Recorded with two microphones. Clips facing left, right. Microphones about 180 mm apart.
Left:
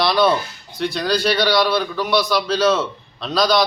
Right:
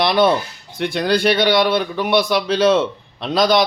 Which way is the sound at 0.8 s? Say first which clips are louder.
Right 3 dB; 55° right (ahead or behind).